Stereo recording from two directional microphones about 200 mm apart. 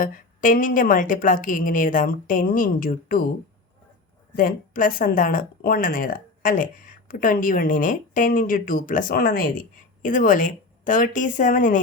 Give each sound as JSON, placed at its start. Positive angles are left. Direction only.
{"t": 0.0, "sound": "speech", "side_deg": 45}
{"t": 4.4, "sound": "speech", "side_deg": 45}